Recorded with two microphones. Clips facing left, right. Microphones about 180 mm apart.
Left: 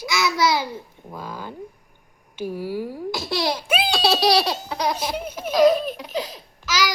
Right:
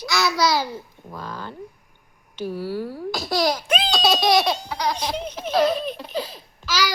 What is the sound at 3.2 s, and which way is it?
Speech, 25° left (ahead or behind).